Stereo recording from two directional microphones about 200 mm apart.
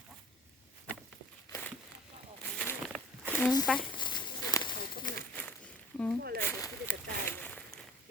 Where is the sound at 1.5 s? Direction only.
10° left (ahead or behind).